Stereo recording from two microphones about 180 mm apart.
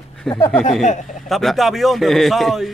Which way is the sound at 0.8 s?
40° left (ahead or behind).